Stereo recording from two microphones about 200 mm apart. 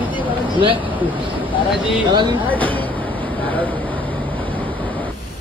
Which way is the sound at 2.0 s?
20° right (ahead or behind).